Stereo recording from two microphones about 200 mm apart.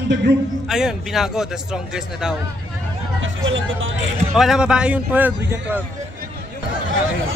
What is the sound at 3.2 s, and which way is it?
Speech, 75° right (ahead or behind).